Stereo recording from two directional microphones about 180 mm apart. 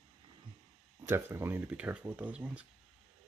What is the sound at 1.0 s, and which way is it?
Speech, 15° right (ahead or behind).